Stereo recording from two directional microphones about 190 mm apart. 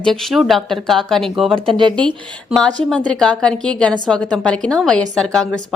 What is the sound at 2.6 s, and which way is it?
A woman's voice, 5° left (ahead or behind).